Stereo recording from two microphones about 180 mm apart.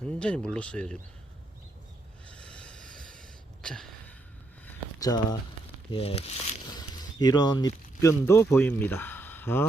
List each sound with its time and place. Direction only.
0.0 s speech: 5° left (ahead or behind)
2.3 s a sound: 5° left (ahead or behind)
4.9 s speech: 20° left (ahead or behind)
5.9 s speech: 30° left (ahead or behind)
6.7 s speech: 20° left (ahead or behind)